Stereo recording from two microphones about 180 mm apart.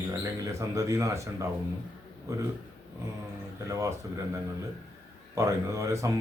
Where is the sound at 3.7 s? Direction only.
15° right (ahead or behind).